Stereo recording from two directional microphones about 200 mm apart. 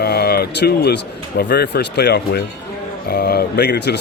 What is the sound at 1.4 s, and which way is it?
A man's voice, 55° left (ahead or behind).